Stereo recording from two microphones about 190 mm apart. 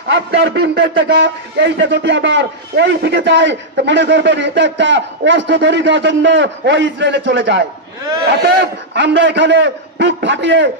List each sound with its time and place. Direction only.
0.1 s a man's voice: 65° right (ahead or behind)
8.9 s a man's voice: 65° right (ahead or behind)